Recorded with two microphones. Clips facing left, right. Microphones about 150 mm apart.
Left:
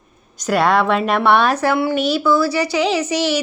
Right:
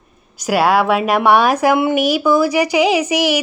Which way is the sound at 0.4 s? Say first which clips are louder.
Right 2 dB; 10° right (ahead or behind).